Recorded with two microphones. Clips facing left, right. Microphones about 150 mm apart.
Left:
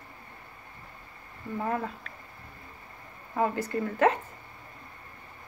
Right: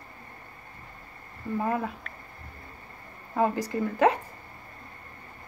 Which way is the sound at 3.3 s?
15° right (ahead or behind).